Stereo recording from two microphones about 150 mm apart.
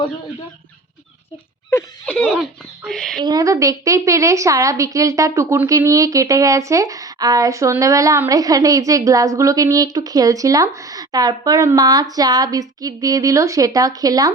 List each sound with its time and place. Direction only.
2.0 s speech: centre (ahead or behind)
3.2 s a woman's voice: 25° right (ahead or behind)